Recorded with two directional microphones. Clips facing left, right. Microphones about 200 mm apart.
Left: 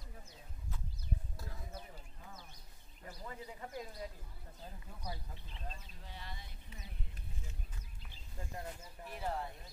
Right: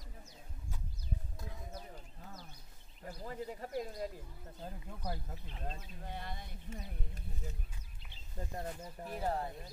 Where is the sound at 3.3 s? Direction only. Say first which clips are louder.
Right 6 dB; 40° right (ahead or behind).